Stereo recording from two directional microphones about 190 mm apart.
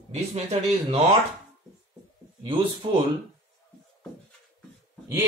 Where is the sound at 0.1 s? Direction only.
35° right (ahead or behind).